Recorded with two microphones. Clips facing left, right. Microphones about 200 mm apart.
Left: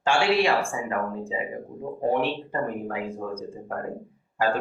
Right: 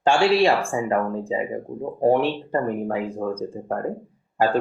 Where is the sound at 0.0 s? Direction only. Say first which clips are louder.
Right 4 dB; 35° right (ahead or behind).